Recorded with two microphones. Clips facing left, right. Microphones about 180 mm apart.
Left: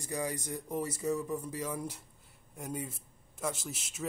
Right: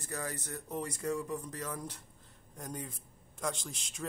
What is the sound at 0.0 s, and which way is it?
A man's voice, 10° left (ahead or behind).